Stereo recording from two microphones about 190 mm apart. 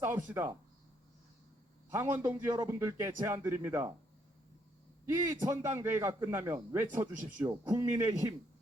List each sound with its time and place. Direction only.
0.0 s a man's voice: 10° right (ahead or behind)
1.9 s a man's voice: 10° right (ahead or behind)
5.0 s a man's voice: 10° right (ahead or behind)